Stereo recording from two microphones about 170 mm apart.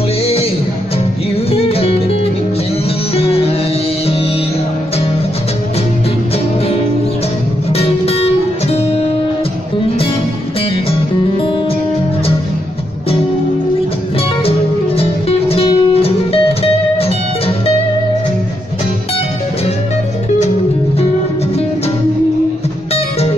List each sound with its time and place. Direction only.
1.5 s music: 35° left (ahead or behind)
3.2 s music: 35° left (ahead or behind)
7.7 s music: 35° left (ahead or behind)
10.9 s music: 30° left (ahead or behind)
15.0 s music: 35° left (ahead or behind)